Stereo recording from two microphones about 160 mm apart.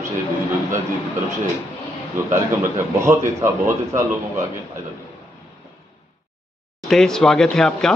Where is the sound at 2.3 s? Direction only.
15° right (ahead or behind).